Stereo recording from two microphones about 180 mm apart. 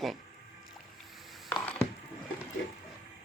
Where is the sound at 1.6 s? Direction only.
5° left (ahead or behind).